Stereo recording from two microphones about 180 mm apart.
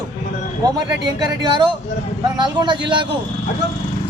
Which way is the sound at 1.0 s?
25° right (ahead or behind).